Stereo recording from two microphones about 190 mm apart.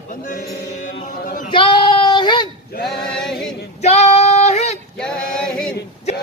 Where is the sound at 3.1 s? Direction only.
5° left (ahead or behind).